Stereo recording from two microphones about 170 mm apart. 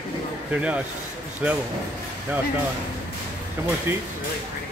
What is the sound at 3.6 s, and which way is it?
Speech, 15° right (ahead or behind).